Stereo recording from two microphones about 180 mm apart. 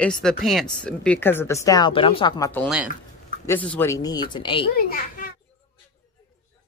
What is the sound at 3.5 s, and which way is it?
Speech, 10° left (ahead or behind).